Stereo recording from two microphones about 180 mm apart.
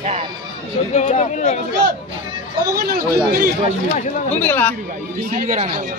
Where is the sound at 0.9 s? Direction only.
40° left (ahead or behind).